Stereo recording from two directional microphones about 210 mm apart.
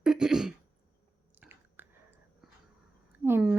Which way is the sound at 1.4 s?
10° right (ahead or behind).